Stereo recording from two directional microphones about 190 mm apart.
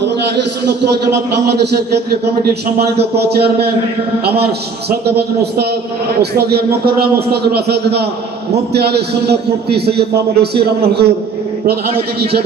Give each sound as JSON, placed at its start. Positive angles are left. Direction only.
{"t": 2.4, "sound": "a man's voice", "side_deg": -55}